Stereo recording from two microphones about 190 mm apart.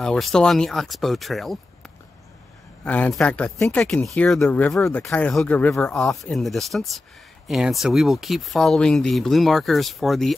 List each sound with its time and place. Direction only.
0.0 s speech: 5° left (ahead or behind)
2.8 s speech: 10° left (ahead or behind)